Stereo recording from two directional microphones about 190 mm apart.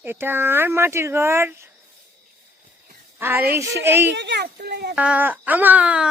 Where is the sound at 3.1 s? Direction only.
10° right (ahead or behind).